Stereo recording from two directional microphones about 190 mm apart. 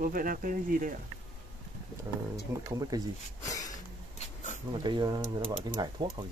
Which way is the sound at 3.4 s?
20° left (ahead or behind).